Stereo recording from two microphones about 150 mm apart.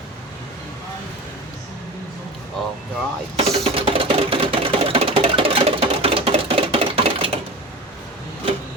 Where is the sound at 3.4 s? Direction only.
40° right (ahead or behind).